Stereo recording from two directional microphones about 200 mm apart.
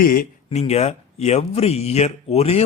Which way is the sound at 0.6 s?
30° left (ahead or behind).